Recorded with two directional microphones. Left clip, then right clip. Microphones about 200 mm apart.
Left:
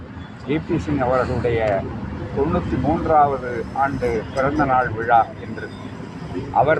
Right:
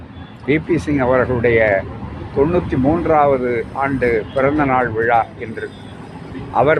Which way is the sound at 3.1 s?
55° right (ahead or behind).